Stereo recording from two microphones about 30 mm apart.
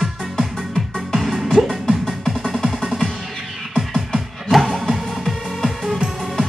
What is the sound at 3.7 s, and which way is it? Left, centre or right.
Music, right.